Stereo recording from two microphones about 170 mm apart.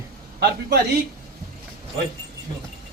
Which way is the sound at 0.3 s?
75° right (ahead or behind).